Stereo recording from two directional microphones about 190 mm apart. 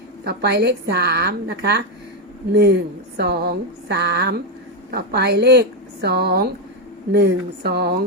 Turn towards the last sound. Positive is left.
turn(degrees=-55)  # may be behind; listen again after turning